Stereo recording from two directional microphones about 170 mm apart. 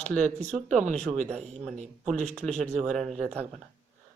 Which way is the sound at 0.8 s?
45° right (ahead or behind).